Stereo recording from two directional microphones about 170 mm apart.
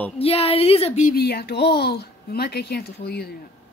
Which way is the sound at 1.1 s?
65° left (ahead or behind).